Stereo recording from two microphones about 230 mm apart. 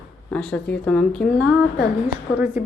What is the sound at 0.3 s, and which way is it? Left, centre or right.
Speech, centre.